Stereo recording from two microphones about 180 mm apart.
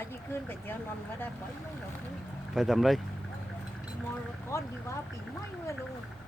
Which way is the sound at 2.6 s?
Centre (ahead or behind).